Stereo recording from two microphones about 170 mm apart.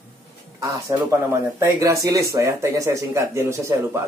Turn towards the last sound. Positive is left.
turn(degrees=-15)  # may be behind; listen again after turning